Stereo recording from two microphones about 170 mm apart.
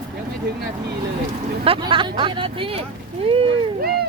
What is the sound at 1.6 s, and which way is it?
Speech, 30° right (ahead or behind).